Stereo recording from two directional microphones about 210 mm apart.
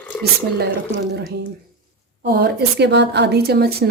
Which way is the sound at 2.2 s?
50° right (ahead or behind).